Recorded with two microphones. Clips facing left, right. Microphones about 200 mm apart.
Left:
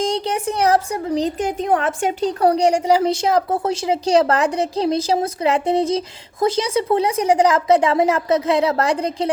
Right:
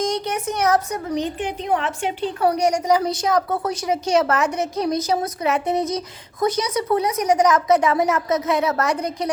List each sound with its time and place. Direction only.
0.0 s a woman's voice: 30° left (ahead or behind)